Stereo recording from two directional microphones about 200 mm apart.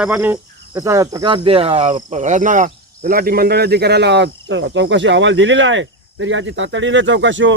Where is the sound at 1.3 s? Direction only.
25° right (ahead or behind).